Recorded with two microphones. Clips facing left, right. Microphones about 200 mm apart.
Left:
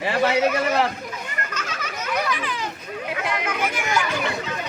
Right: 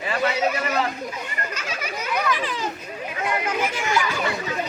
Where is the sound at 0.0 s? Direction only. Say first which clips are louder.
Left 3 dB; 85° left.